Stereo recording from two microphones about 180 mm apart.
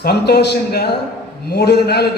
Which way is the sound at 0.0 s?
65° left (ahead or behind).